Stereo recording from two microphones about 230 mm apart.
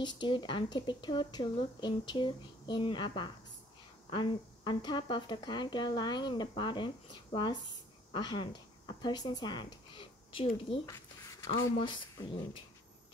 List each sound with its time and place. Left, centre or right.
0.0 s speech: centre